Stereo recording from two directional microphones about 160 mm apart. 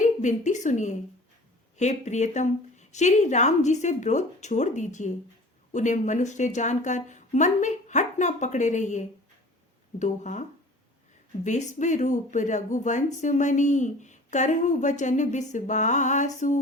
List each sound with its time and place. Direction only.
0.0 s a woman's voice: 50° left (ahead or behind)
11.4 s speech: 45° left (ahead or behind)